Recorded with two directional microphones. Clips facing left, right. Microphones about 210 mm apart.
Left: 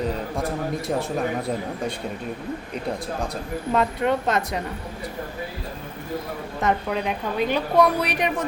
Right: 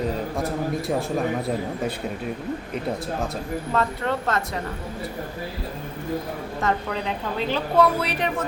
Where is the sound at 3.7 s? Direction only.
15° left (ahead or behind).